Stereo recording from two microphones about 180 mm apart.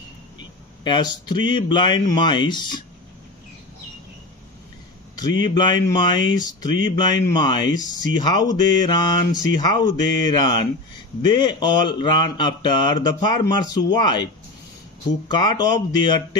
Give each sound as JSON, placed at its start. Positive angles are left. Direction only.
{"t": 0.8, "sound": "speech", "side_deg": 25}
{"t": 5.4, "sound": "speech", "side_deg": 25}
{"t": 15.2, "sound": "speech", "side_deg": 25}